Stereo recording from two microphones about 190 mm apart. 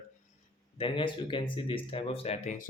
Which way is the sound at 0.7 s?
25° left (ahead or behind).